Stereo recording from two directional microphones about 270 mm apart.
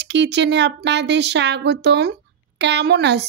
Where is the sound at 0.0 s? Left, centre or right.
Right.